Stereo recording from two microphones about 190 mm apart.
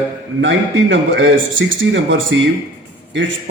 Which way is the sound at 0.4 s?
75° right (ahead or behind).